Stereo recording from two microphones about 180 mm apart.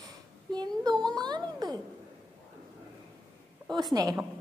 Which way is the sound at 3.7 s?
20° right (ahead or behind).